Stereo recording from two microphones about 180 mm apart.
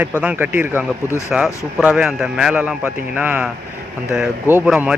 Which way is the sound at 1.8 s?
5° right (ahead or behind).